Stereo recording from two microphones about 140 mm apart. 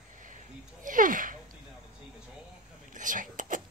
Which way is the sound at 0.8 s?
75° right (ahead or behind).